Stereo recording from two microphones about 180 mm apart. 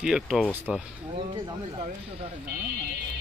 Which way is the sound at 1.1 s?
30° right (ahead or behind).